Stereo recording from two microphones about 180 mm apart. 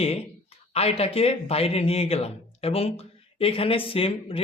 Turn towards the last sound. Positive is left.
turn(degrees=30)  # may be behind; listen again after turning